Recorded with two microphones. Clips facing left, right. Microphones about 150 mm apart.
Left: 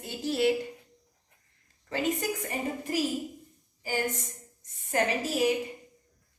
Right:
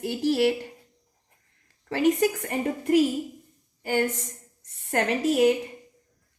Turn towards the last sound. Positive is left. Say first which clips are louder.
# right 6 dB
turn(degrees=-60)  # may be behind; listen again after turning